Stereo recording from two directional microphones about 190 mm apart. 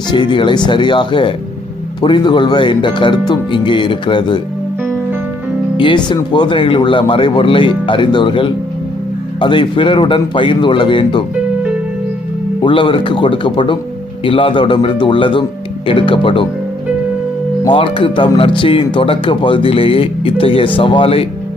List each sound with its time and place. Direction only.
0.1 s speech: 25° left (ahead or behind)
5.7 s speech: 25° left (ahead or behind)
12.6 s speech: 25° left (ahead or behind)
17.6 s speech: 25° left (ahead or behind)